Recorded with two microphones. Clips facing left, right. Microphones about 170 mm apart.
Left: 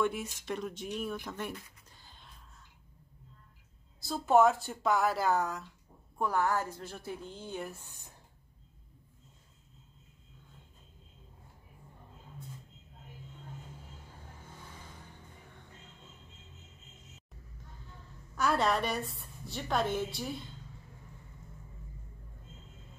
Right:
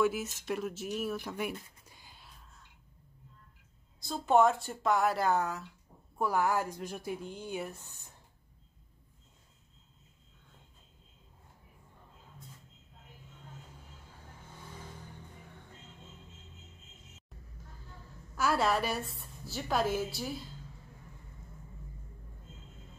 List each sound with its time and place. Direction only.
0.0 s a woman's voice: 5° right (ahead or behind)
1.9 s music: 10° right (ahead or behind)
4.0 s a woman's voice: centre (ahead or behind)
7.8 s a sound: 15° left (ahead or behind)
18.3 s a woman's voice: 5° right (ahead or behind)